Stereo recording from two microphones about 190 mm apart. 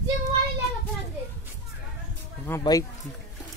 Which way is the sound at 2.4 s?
15° left (ahead or behind).